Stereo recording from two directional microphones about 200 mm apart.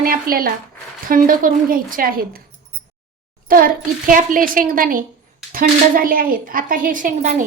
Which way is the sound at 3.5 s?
45° right (ahead or behind).